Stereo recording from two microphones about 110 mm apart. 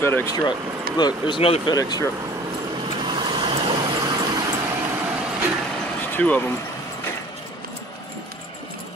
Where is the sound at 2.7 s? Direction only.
50° right (ahead or behind).